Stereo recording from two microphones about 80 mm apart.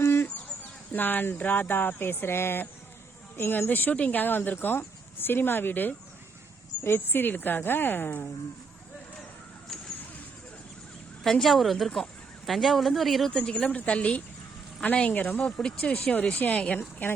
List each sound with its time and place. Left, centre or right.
0.0 s speech: left
11.2 s speech: centre
13.3 s speech: centre